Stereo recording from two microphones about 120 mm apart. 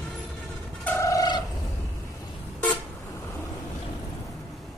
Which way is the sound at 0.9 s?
25° left (ahead or behind).